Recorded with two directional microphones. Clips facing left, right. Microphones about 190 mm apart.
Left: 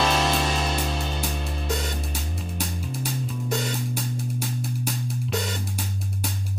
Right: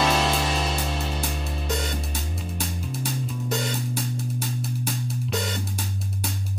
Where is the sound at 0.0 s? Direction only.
Centre (ahead or behind).